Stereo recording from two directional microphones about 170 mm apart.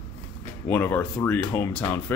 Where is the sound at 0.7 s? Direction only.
15° left (ahead or behind).